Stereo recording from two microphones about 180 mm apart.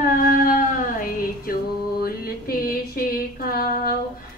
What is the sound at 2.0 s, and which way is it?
Female singing, 55° left (ahead or behind).